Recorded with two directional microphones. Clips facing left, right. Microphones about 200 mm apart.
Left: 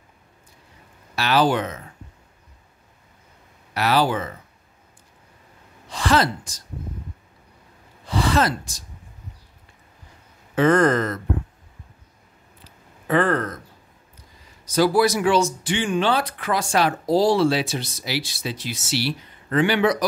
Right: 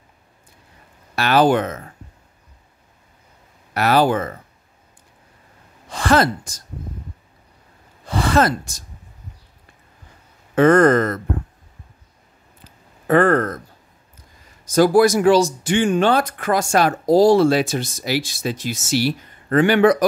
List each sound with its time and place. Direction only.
1.1 s speech: 50° right (ahead or behind)
3.7 s speech: 50° right (ahead or behind)
5.9 s speech: 50° right (ahead or behind)
8.0 s gasp: 50° right (ahead or behind)
10.5 s speech: 50° right (ahead or behind)
12.6 s a sound: 50° right (ahead or behind)
14.6 s speech: 50° right (ahead or behind)